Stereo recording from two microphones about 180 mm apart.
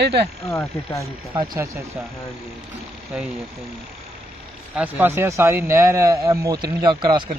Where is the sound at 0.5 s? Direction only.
15° left (ahead or behind).